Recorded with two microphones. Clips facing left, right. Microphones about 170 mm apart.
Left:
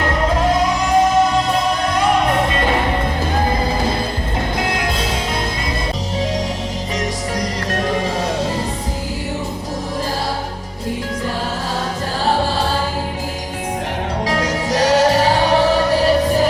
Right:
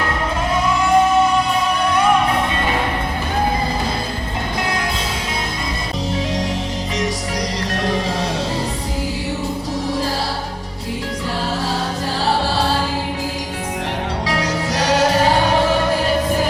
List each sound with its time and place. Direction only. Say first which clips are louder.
14.3 s music: left 2 dB; 45° left (ahead or behind)